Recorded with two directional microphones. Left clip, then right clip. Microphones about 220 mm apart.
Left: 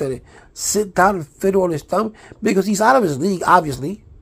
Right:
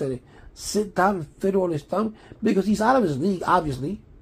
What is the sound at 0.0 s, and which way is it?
Speech, 30° left (ahead or behind).